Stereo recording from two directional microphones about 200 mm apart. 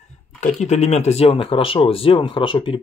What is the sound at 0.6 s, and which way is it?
Speech, 35° left (ahead or behind).